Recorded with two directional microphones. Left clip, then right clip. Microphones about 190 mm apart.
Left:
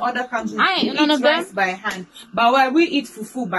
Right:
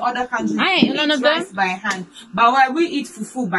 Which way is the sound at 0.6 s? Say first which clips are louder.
Even; 10° right (ahead or behind).